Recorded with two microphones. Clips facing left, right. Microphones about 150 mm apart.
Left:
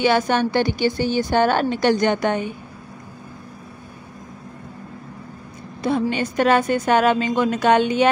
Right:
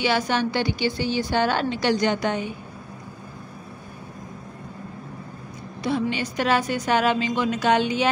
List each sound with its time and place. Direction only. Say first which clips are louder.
0.0 s a woman's voice: left 4 dB; 50° left (ahead or behind)
5.8 s a woman's voice: left 4 dB; 50° left (ahead or behind)